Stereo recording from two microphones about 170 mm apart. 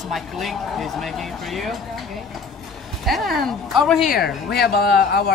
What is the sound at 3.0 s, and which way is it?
Speech, centre (ahead or behind).